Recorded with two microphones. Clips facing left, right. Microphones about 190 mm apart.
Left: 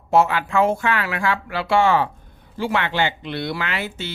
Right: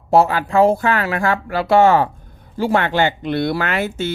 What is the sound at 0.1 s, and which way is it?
Speech, 35° right (ahead or behind).